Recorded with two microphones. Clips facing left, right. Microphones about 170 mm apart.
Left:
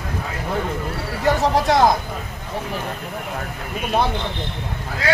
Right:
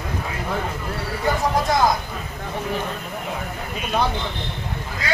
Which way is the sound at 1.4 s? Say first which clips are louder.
Left 3 dB; 75° left (ahead or behind).